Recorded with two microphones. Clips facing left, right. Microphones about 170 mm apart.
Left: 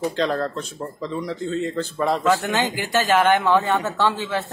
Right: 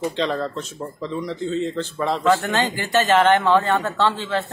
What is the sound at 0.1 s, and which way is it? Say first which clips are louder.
Speech: left 1 dB; 5° left (ahead or behind).